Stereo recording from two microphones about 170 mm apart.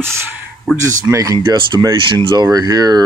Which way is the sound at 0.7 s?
20° right (ahead or behind).